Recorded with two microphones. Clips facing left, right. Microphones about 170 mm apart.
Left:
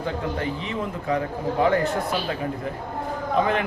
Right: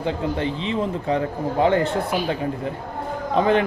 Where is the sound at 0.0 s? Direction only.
25° right (ahead or behind).